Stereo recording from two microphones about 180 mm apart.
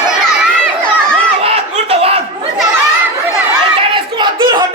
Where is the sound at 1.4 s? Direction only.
35° right (ahead or behind).